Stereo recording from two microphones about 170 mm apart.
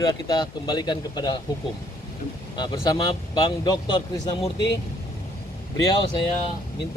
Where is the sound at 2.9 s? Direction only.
25° left (ahead or behind).